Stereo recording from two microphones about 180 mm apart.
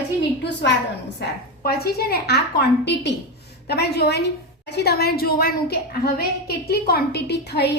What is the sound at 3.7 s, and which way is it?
A woman's voice, 65° left (ahead or behind).